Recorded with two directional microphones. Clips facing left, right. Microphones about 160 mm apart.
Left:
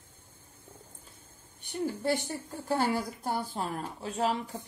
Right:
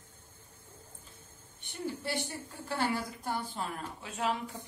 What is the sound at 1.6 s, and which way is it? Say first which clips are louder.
A woman's voice: left 6 dB; 45° left (ahead or behind).